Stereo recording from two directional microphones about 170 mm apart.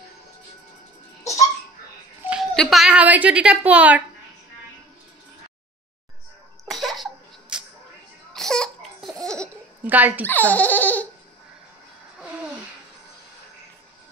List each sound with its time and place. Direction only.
1.2 s music: 40° left (ahead or behind)
2.5 s speech: centre (ahead or behind)
6.7 s cough: centre (ahead or behind)
8.3 s laughter: 5° left (ahead or behind)
9.8 s speech: 10° right (ahead or behind)
10.2 s speech: 10° left (ahead or behind)